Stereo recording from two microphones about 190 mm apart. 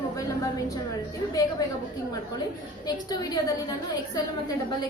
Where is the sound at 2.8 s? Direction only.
20° left (ahead or behind).